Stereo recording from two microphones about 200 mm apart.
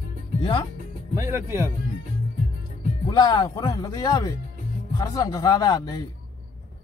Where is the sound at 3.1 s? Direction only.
20° left (ahead or behind).